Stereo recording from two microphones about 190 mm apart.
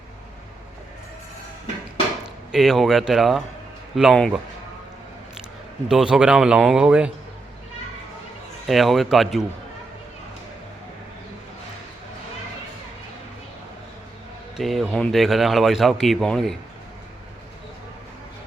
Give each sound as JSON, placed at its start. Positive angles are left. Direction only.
{"t": 2.2, "sound": "speech", "side_deg": 0}
{"t": 5.9, "sound": "speech", "side_deg": -5}
{"t": 8.6, "sound": "speech", "side_deg": 0}
{"t": 14.5, "sound": "speech", "side_deg": 0}